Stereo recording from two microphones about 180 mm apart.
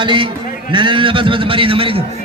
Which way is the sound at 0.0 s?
25° right (ahead or behind).